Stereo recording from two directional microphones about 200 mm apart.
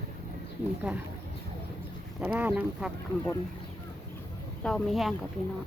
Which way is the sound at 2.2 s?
10° right (ahead or behind).